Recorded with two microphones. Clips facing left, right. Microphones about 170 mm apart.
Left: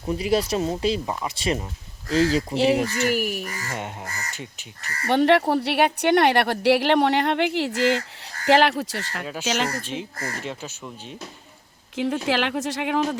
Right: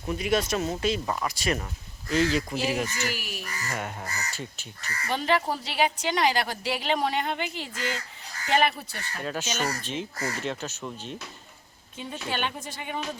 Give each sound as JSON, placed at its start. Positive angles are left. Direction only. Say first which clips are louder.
{"t": 0.0, "sound": "speech", "louder": "left 4 dB", "side_deg": 30}
{"t": 2.9, "sound": "speech", "louder": "left 10 dB", "side_deg": 55}
{"t": 3.4, "sound": "speech", "louder": "left 2 dB", "side_deg": 25}
{"t": 4.8, "sound": "speech", "louder": "left 10 dB", "side_deg": 60}
{"t": 9.2, "sound": "speech", "louder": "even", "side_deg": 5}
{"t": 9.9, "sound": "speech", "louder": "left 1 dB", "side_deg": 55}
{"t": 10.4, "sound": "speech", "louder": "right 1 dB", "side_deg": 10}
{"t": 11.9, "sound": "speech", "louder": "left 9 dB", "side_deg": 85}